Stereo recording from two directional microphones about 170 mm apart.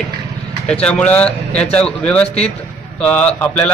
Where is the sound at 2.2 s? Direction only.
40° left (ahead or behind).